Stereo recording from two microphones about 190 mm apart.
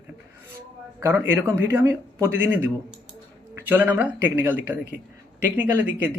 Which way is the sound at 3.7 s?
10° right (ahead or behind).